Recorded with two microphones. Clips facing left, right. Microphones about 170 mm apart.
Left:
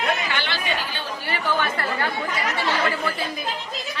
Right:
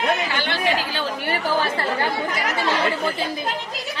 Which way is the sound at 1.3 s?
35° right (ahead or behind).